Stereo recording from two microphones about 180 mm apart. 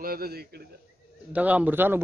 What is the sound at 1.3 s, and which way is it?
Speech, 10° right (ahead or behind).